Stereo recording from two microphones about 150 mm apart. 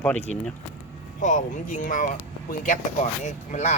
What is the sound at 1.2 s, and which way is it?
Speech, 60° left (ahead or behind).